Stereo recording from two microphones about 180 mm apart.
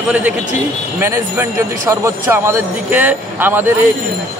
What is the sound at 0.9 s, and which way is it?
A man's voice, 15° right (ahead or behind).